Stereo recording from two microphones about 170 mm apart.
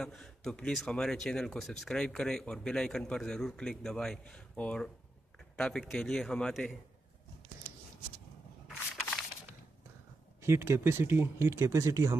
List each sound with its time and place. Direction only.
0.0 s speech: 5° left (ahead or behind)
10.4 s speech: 15° right (ahead or behind)